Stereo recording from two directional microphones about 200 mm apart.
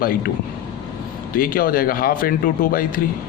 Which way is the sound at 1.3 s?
45° left (ahead or behind).